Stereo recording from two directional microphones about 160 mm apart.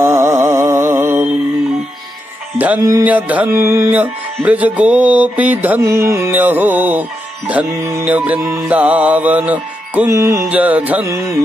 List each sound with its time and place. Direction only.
0.0 s music: 15° right (ahead or behind)
2.6 s music: 15° right (ahead or behind)